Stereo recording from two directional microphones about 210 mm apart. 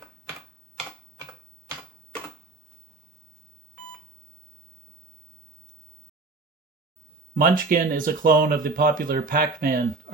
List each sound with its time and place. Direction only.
7.3 s speech: 40° right (ahead or behind)